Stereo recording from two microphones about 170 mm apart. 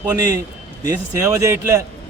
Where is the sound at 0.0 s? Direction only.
15° right (ahead or behind).